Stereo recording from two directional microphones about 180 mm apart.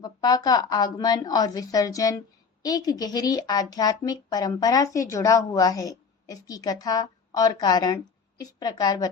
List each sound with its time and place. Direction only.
0.0 s a woman's voice: 20° left (ahead or behind)